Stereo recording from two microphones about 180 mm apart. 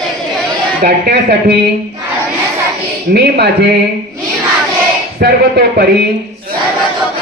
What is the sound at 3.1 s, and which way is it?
Speech, 65° right (ahead or behind).